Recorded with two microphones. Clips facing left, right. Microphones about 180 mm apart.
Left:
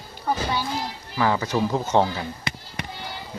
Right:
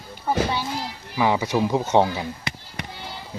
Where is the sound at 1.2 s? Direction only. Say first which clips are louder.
Right 1 dB; 15° right (ahead or behind).